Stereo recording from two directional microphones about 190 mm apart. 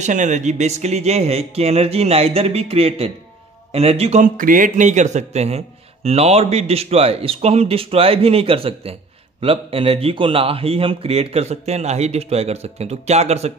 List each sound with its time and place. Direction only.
0.0 s speech: 40° right (ahead or behind)